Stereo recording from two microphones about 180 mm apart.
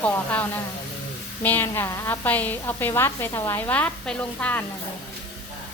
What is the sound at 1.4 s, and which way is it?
A woman's voice, 10° left (ahead or behind).